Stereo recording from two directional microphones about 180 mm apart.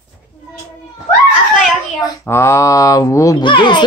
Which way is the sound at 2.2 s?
15° left (ahead or behind).